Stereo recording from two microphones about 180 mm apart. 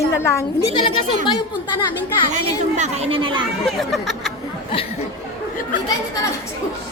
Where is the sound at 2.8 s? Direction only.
35° right (ahead or behind).